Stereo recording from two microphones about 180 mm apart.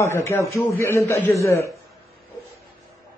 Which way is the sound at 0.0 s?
15° left (ahead or behind).